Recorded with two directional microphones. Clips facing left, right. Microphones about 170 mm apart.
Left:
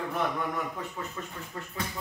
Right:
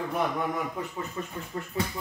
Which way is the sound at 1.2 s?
20° right (ahead or behind).